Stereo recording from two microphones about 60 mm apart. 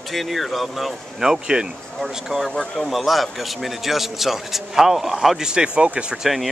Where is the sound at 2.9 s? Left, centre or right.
Centre.